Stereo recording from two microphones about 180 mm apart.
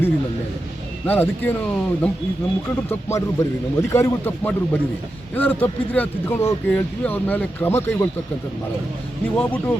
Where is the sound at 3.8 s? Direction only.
15° left (ahead or behind).